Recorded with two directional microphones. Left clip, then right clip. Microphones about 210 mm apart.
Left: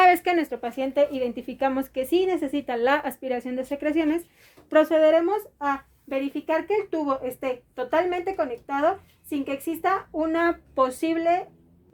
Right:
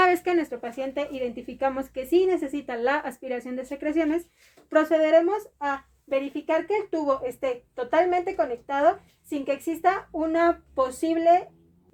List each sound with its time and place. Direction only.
0.0 s speech: 40° left (ahead or behind)